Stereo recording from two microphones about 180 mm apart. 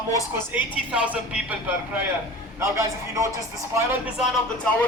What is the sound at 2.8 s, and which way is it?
Speech, 15° right (ahead or behind).